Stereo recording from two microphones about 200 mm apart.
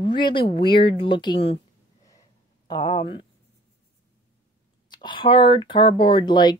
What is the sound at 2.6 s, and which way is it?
Speech, 25° left (ahead or behind).